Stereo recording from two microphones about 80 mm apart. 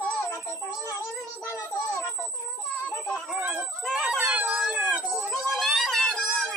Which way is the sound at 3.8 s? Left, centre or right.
Centre.